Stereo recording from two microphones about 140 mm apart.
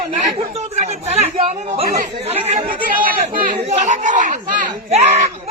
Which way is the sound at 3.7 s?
55° right (ahead or behind).